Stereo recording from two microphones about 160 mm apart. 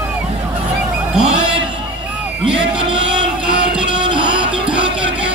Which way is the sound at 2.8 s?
55° left (ahead or behind).